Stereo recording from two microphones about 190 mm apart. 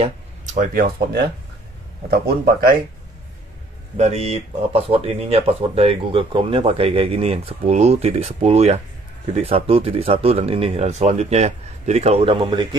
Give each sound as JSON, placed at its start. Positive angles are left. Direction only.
{"t": 0.6, "sound": "speech", "side_deg": -50}
{"t": 3.9, "sound": "speech", "side_deg": -35}